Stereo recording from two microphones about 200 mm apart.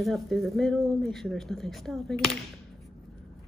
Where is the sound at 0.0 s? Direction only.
Centre (ahead or behind).